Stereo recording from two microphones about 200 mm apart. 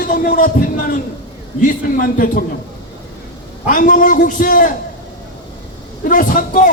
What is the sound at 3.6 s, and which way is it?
A man's voice, 40° left (ahead or behind).